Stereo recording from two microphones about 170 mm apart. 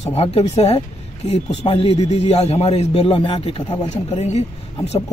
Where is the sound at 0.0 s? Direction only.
35° left (ahead or behind).